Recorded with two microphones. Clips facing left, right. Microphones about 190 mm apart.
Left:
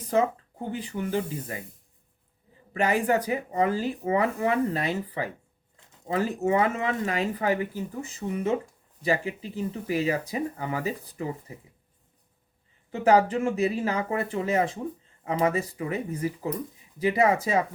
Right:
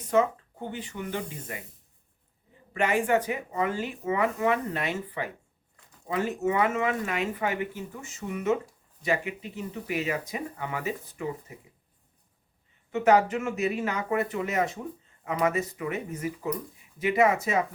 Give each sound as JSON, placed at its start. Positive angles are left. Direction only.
{"t": 0.1, "sound": "speech", "side_deg": 35}
{"t": 2.7, "sound": "speech", "side_deg": 35}
{"t": 12.9, "sound": "speech", "side_deg": 30}